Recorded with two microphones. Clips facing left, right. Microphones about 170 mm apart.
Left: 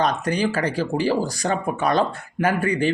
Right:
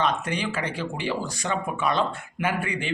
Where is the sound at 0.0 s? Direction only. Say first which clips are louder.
Left 5 dB; 40° left (ahead or behind).